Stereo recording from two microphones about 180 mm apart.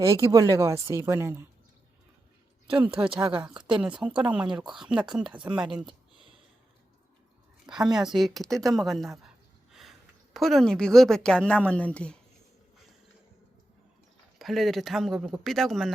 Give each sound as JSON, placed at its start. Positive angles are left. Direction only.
{"t": 0.0, "sound": "speech", "side_deg": -15}
{"t": 3.1, "sound": "a woman's voice", "side_deg": -5}
{"t": 4.4, "sound": "speech", "side_deg": -25}
{"t": 4.7, "sound": "a woman's voice", "side_deg": -5}
{"t": 7.9, "sound": "a woman's voice", "side_deg": 0}
{"t": 10.3, "sound": "a woman's voice", "side_deg": 0}
{"t": 14.3, "sound": "a woman's voice", "side_deg": 0}